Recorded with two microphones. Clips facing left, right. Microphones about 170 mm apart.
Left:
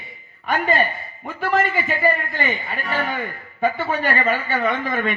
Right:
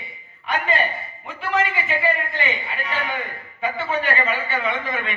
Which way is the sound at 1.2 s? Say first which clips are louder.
Left 3 dB; 50° left (ahead or behind).